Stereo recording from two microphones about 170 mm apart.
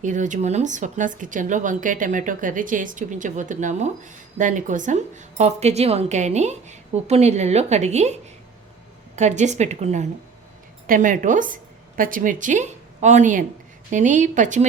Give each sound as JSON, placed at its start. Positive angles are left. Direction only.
{"t": 0.0, "sound": "a woman's voice", "side_deg": -45}